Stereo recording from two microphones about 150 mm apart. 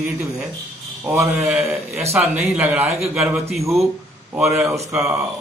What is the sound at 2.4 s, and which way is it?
Speech, 5° right (ahead or behind).